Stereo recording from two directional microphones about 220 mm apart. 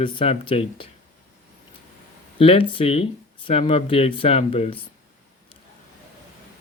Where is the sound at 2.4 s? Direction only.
25° left (ahead or behind).